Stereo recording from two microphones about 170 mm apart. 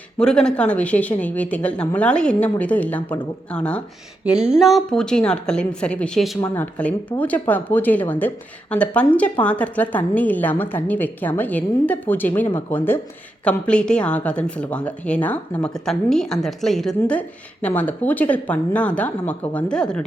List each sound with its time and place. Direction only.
0.2 s speech: 5° left (ahead or behind)
4.3 s a woman's voice: 5° right (ahead or behind)
6.4 s speech: 20° left (ahead or behind)